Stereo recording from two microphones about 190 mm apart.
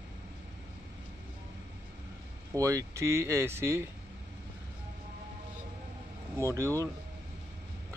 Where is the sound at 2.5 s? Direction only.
15° right (ahead or behind).